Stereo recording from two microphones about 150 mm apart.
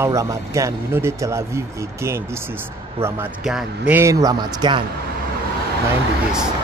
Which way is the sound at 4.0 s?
20° right (ahead or behind).